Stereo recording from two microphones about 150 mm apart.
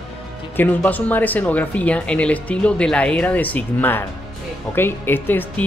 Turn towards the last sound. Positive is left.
turn(degrees=15)  # may be behind; listen again after turning